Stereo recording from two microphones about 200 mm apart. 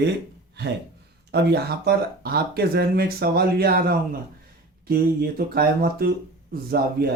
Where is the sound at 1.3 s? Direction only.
55° right (ahead or behind).